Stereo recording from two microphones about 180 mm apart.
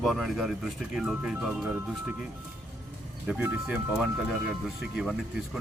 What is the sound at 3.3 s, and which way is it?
Speech, 5° right (ahead or behind).